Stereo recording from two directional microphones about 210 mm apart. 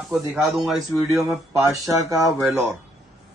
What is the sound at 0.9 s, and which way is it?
Speech, 10° left (ahead or behind).